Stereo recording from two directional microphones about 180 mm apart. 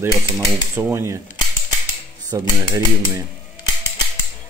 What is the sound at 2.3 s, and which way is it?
Speech, 20° right (ahead or behind).